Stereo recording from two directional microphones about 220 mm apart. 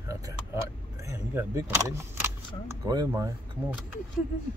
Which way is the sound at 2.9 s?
15° right (ahead or behind).